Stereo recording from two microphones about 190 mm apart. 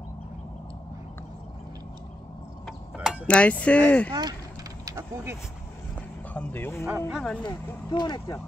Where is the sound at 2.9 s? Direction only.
5° right (ahead or behind).